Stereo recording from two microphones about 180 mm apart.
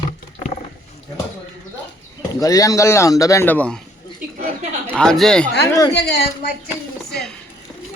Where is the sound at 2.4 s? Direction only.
20° left (ahead or behind).